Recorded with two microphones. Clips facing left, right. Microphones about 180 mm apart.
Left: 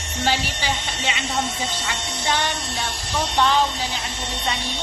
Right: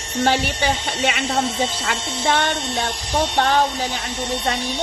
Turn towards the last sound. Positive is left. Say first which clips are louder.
# right 2 dB
turn(degrees=-50)  # may be behind; listen again after turning